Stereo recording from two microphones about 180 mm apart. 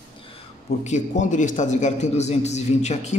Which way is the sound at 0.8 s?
40° left (ahead or behind).